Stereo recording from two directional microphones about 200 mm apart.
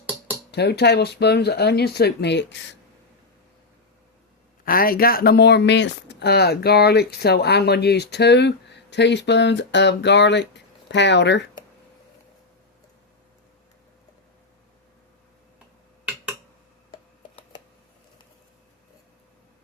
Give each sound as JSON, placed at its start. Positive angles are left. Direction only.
{"t": 0.0, "sound": "a sound", "side_deg": -10}
{"t": 0.5, "sound": "speech", "side_deg": 55}
{"t": 4.6, "sound": "speech", "side_deg": 45}